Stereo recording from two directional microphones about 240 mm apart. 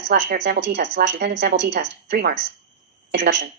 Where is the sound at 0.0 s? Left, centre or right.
Right.